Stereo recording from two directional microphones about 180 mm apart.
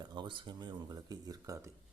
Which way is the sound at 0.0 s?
25° right (ahead or behind).